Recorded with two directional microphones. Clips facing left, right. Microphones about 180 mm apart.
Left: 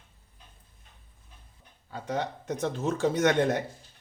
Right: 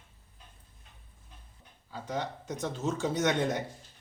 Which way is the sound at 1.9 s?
60° left (ahead or behind).